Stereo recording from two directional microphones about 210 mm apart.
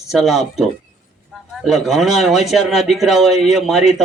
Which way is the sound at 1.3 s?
Centre (ahead or behind).